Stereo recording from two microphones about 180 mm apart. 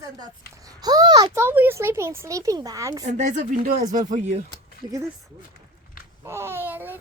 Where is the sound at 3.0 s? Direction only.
40° right (ahead or behind).